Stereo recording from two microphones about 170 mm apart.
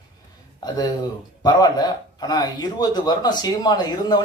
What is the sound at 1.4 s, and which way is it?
Speech, 20° left (ahead or behind).